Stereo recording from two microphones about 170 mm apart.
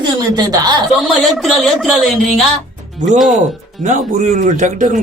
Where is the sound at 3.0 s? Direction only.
45° right (ahead or behind).